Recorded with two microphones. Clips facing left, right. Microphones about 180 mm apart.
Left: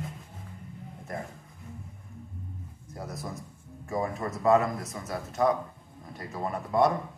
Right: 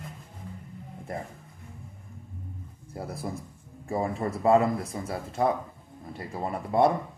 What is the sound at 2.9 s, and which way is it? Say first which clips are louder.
A man's voice: right 3 dB; 30° right (ahead or behind).